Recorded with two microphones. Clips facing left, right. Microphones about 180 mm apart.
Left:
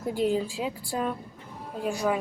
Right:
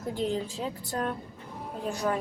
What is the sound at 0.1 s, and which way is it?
A woman's voice, 10° left (ahead or behind).